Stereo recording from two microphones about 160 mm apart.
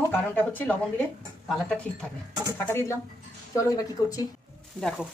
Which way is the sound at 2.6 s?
15° left (ahead or behind).